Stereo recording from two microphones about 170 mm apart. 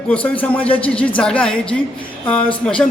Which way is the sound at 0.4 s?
10° left (ahead or behind).